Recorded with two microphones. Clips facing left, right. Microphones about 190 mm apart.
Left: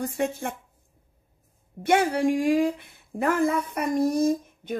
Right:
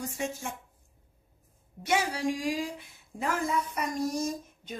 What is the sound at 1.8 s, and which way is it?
Speech, 55° left (ahead or behind).